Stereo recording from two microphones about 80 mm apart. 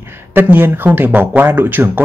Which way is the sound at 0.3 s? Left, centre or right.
Right.